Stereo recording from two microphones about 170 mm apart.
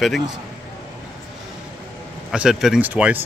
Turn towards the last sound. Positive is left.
turn(degrees=-10)  # may be behind; listen again after turning